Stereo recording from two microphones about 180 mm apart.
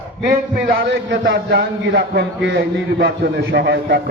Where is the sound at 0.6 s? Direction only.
70° right (ahead or behind).